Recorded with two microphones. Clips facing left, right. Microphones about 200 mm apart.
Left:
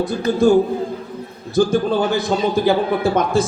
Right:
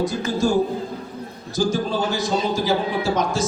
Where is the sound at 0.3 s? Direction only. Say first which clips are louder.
Left 6 dB; 60° left (ahead or behind).